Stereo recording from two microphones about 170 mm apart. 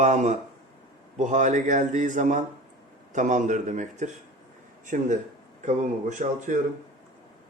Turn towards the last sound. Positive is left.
turn(degrees=-45)  # may be behind; listen again after turning